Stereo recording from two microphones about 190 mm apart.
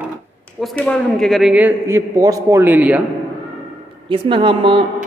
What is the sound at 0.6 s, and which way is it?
A man's voice, 5° left (ahead or behind).